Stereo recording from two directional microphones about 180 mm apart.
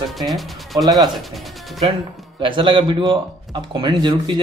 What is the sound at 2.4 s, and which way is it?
Speech, 30° right (ahead or behind).